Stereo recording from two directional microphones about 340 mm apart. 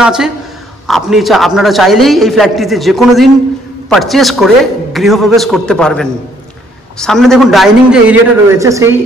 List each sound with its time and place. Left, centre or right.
0.0 s a man's voice: centre